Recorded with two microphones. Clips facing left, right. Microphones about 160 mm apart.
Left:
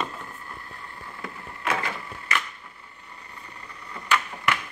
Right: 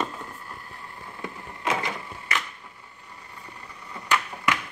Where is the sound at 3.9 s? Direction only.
15° right (ahead or behind).